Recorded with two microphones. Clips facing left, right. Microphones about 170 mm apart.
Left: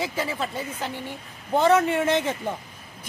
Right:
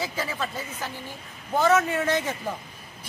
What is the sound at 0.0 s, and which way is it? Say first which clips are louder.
A woman's voice: left 2 dB; 25° left (ahead or behind).